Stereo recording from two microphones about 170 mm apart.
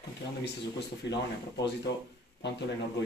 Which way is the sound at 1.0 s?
90° left.